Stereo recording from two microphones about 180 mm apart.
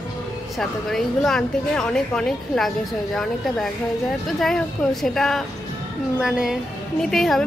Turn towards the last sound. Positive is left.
turn(degrees=0)  # may be behind; listen again after turning